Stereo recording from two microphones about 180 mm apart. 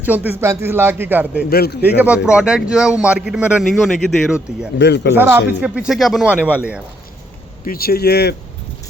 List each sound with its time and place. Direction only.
0.0 s speech: 10° right (ahead or behind)
1.5 s speech: 60° left (ahead or behind)
2.0 s a man's voice: 5° right (ahead or behind)
4.8 s speech: 70° left (ahead or behind)
5.1 s speech: 10° right (ahead or behind)
7.6 s speech: 55° left (ahead or behind)